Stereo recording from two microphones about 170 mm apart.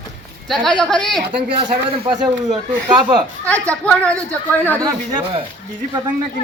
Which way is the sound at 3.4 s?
10° left (ahead or behind).